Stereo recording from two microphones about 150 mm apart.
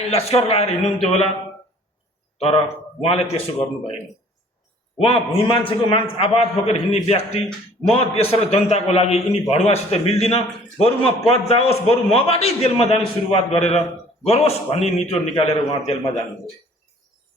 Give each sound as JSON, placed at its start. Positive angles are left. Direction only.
{"t": 0.0, "sound": "a man's voice", "side_deg": 40}
{"t": 3.0, "sound": "a man's voice", "side_deg": 40}
{"t": 4.9, "sound": "a man's voice", "side_deg": 40}